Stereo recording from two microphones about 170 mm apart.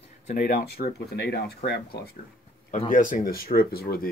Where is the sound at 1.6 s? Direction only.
45° left (ahead or behind).